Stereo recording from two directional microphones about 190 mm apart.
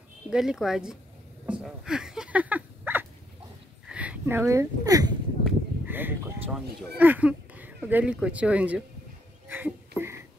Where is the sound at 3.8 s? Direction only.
5° right (ahead or behind).